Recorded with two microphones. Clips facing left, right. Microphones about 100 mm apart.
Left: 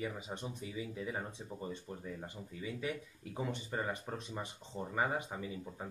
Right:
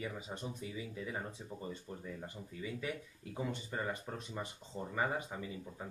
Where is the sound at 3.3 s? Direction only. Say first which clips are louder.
Left 1 dB; 20° left (ahead or behind).